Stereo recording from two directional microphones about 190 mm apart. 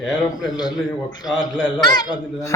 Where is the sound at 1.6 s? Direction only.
20° left (ahead or behind).